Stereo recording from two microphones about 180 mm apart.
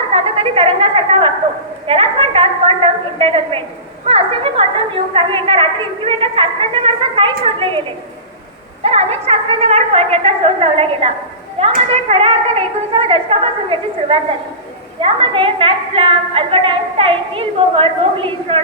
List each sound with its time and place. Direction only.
0.1 s a woman's voice: 30° right (ahead or behind)
8.8 s a woman's voice: 35° right (ahead or behind)